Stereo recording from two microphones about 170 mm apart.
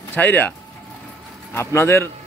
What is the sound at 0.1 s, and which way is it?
Speech, 10° left (ahead or behind).